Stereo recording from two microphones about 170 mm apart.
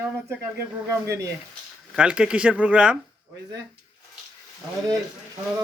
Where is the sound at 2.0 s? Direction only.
5° right (ahead or behind).